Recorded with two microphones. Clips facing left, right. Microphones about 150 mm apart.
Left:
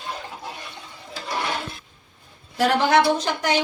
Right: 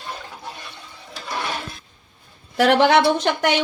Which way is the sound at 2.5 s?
75° right (ahead or behind).